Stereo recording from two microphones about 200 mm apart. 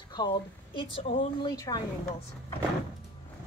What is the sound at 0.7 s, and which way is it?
A woman's voice, 25° left (ahead or behind).